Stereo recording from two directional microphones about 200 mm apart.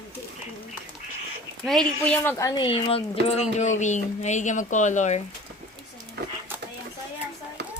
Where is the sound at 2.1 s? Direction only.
10° left (ahead or behind).